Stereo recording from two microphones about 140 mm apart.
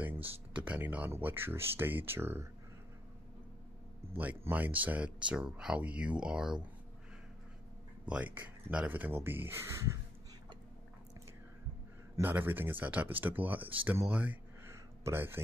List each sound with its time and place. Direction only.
0.7 s speech: 10° right (ahead or behind)
4.1 s speech: 10° right (ahead or behind)
8.0 s speech: 10° right (ahead or behind)
12.2 s speech: 15° right (ahead or behind)